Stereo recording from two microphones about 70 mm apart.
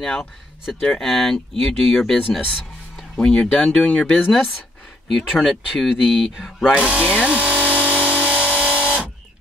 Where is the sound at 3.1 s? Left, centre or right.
Centre.